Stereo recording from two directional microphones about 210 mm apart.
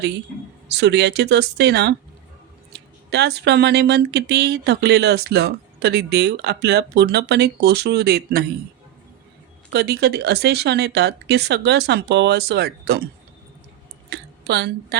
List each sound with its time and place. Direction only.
0.7 s speech: 55° right (ahead or behind)
3.1 s speech: 50° right (ahead or behind)
9.7 s speech: 50° right (ahead or behind)
14.1 s a woman's voice: 55° right (ahead or behind)